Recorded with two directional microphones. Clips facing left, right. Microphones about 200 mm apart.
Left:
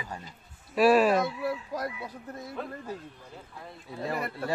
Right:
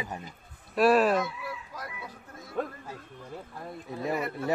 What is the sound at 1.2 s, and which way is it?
Speech, 35° left (ahead or behind).